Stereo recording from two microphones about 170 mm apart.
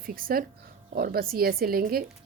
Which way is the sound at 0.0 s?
55° right (ahead or behind).